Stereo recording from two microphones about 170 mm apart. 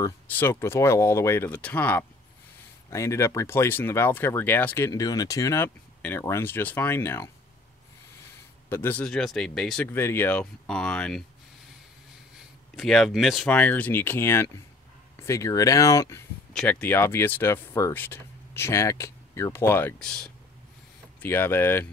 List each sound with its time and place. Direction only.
0.0 s speech: 15° left (ahead or behind)
8.6 s speech: 10° left (ahead or behind)
12.7 s speech: centre (ahead or behind); by 16.2 s 20° left (ahead or behind)
16.5 s speech: 5° left (ahead or behind)